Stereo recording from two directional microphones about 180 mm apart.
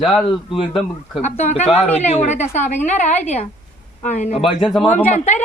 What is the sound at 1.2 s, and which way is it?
A woman's voice, 35° left (ahead or behind).